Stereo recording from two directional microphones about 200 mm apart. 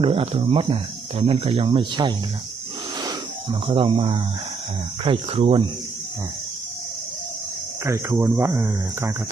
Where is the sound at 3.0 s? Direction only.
25° right (ahead or behind).